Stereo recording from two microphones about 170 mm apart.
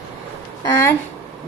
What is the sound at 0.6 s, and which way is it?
Speech, 20° left (ahead or behind).